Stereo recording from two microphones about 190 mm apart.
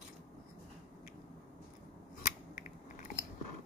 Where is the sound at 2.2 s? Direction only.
40° left (ahead or behind).